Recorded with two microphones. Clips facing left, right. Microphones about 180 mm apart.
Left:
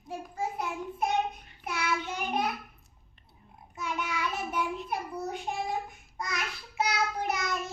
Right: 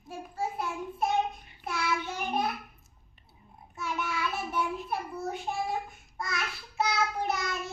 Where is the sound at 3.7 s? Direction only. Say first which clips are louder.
Even; 20° left (ahead or behind).